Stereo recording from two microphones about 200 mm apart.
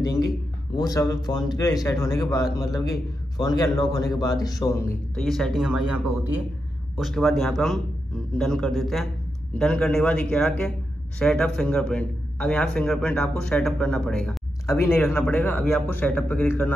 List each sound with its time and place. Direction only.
0.0 s a sound: 15° left (ahead or behind)
0.7 s a man's voice: 20° left (ahead or behind)
5.1 s a man's voice: centre (ahead or behind)